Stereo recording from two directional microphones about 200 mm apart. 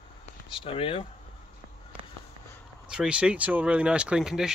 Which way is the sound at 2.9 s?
5° right (ahead or behind).